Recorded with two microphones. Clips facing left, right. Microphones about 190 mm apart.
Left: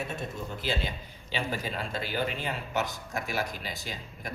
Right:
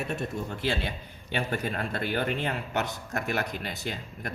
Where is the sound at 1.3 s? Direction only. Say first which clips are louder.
Right 3 dB; 60° right (ahead or behind).